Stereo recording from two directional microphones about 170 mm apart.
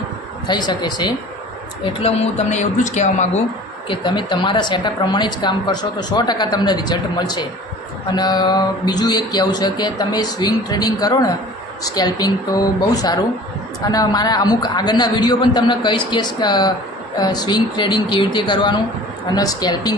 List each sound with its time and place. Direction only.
0.4 s a woman's voice: 25° left (ahead or behind)
1.8 s speech: 35° left (ahead or behind)
3.8 s a woman's voice: 25° left (ahead or behind)